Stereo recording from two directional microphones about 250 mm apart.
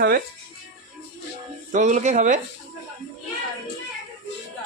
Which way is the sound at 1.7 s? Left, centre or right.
Right.